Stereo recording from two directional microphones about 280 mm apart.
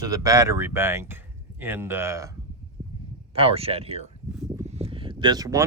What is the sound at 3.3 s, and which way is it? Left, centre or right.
Speech, centre.